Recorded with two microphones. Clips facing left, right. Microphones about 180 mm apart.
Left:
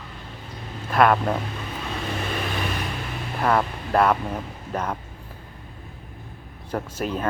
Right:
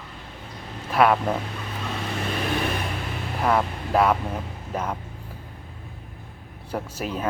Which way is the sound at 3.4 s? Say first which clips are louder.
Left 1 dB; 5° right (ahead or behind).